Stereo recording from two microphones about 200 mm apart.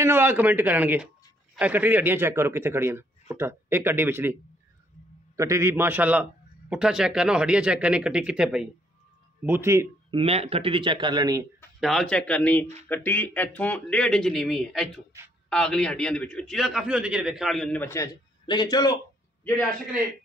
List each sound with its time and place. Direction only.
0.0 s a man's voice: 10° right (ahead or behind)
10.1 s a man's voice: 30° right (ahead or behind)
11.8 s a man's voice: centre (ahead or behind); by 18.9 s 20° left (ahead or behind)